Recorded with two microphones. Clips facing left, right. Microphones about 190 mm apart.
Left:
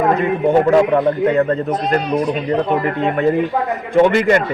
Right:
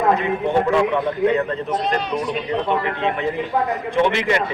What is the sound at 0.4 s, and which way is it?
A man's voice, 40° left (ahead or behind).